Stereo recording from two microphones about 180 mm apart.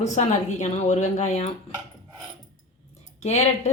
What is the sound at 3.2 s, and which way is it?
Speech, 40° left (ahead or behind).